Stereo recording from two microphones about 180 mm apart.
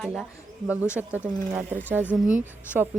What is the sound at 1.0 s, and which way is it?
A woman's voice, 10° right (ahead or behind).